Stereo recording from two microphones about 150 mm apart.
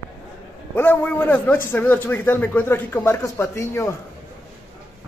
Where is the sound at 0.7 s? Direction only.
10° left (ahead or behind).